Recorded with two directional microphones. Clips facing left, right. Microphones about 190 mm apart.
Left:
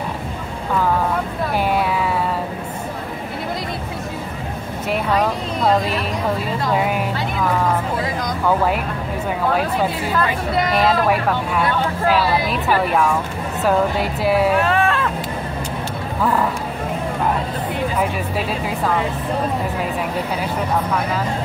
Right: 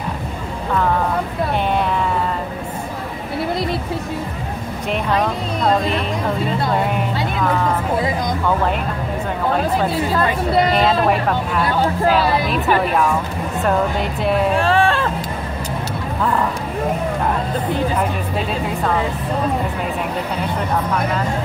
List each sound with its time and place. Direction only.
4.9 s speech: 5° left (ahead or behind)
10.1 s speech: 30° right (ahead or behind)
10.7 s speech: centre (ahead or behind)
14.6 s a sound: 30° right (ahead or behind)